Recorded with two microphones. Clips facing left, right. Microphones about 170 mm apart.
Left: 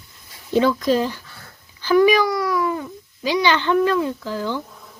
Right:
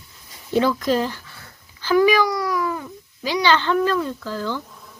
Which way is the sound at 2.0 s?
25° left (ahead or behind).